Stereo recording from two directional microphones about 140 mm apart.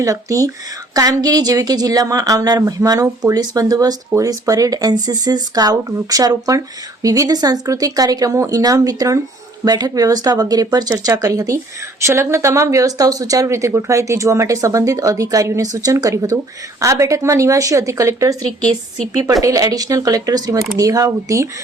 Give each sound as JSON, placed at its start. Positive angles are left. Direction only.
{"t": 0.0, "sound": "speech", "side_deg": -25}